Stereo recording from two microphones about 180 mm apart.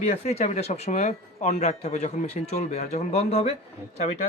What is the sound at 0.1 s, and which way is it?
Speech, 35° left (ahead or behind).